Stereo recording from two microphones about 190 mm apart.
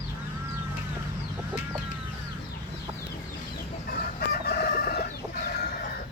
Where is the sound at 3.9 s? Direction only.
55° left (ahead or behind).